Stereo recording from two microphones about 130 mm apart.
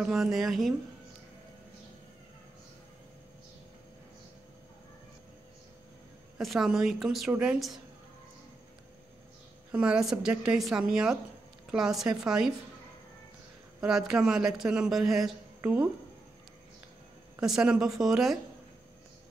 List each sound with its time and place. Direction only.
0.0 s a man's voice: 5° right (ahead or behind)
6.3 s a man's voice: centre (ahead or behind)
9.7 s a woman's voice: 5° right (ahead or behind)
13.7 s a man's voice: 5° right (ahead or behind)
15.6 s speech: 15° right (ahead or behind)
17.4 s a man's voice: 5° right (ahead or behind)